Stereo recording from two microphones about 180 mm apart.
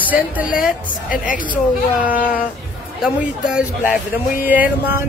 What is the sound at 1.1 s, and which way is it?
Speech, 50° left (ahead or behind).